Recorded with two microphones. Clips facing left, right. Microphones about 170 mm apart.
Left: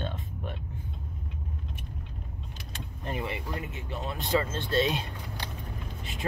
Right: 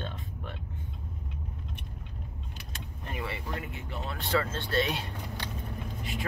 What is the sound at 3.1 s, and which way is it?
Speech, 20° left (ahead or behind).